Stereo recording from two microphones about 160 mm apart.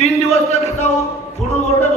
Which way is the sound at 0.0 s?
40° left (ahead or behind).